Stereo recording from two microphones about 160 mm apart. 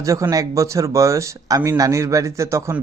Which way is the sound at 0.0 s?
20° right (ahead or behind).